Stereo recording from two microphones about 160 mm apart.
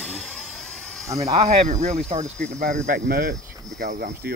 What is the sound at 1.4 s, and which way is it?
Speech, 45° right (ahead or behind).